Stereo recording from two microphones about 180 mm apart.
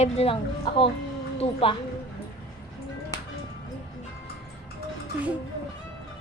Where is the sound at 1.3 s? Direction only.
30° left (ahead or behind).